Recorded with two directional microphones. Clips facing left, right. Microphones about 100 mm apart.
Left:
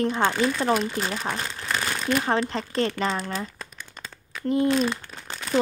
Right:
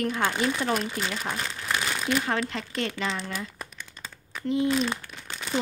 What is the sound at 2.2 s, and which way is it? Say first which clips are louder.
Speech: left 4 dB; 35° left (ahead or behind).